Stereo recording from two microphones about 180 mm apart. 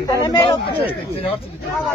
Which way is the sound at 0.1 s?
20° left (ahead or behind).